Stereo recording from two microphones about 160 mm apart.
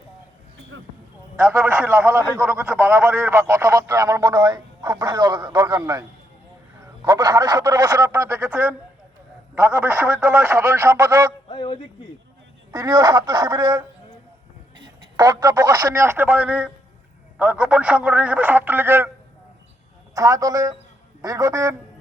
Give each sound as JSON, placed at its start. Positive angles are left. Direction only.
{"t": 1.4, "sound": "a man's voice", "side_deg": -15}
{"t": 11.4, "sound": "a sound", "side_deg": 35}
{"t": 12.7, "sound": "speech", "side_deg": -20}
{"t": 15.1, "sound": "a man's voice", "side_deg": -20}
{"t": 20.1, "sound": "speech", "side_deg": -20}